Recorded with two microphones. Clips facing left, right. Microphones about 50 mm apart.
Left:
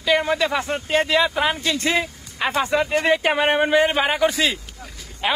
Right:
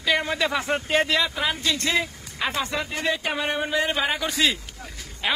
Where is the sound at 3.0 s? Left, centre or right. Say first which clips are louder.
Left 7 dB; left.